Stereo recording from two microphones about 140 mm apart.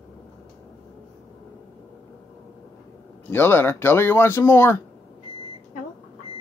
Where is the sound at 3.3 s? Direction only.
15° left (ahead or behind).